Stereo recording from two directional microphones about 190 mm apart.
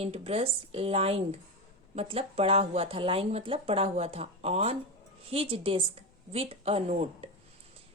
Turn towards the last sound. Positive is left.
turn(degrees=-35)  # may be behind; listen again after turning